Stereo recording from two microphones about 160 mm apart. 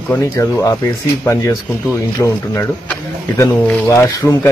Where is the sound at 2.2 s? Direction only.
5° left (ahead or behind).